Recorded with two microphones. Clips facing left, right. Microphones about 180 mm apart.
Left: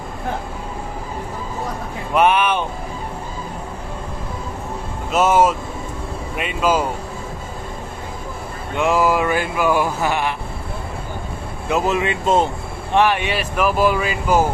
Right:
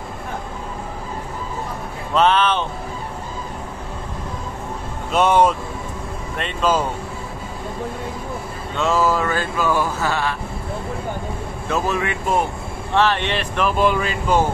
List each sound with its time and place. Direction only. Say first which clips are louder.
2.1 s speech: left 1 dB; 10° left (ahead or behind)
5.1 s speech: even; 5° left (ahead or behind)
8.7 s speech: left 2 dB; 15° left (ahead or behind)
11.7 s speech: left 3 dB; 20° left (ahead or behind)